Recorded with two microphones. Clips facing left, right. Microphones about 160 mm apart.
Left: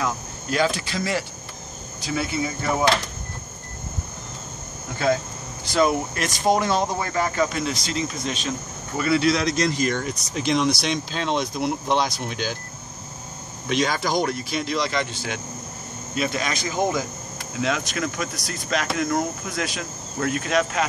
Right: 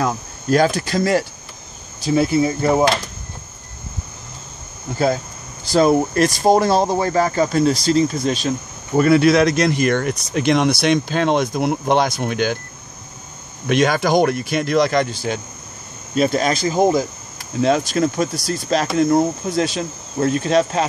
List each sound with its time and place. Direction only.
0.0 s speech: 45° right (ahead or behind)
5.7 s speech: 35° right (ahead or behind)
9.0 s speech: 55° right (ahead or behind)
13.7 s speech: 60° right (ahead or behind); by 20.8 s 30° right (ahead or behind)